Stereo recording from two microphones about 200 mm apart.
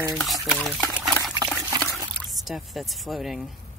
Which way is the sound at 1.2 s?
20° right (ahead or behind).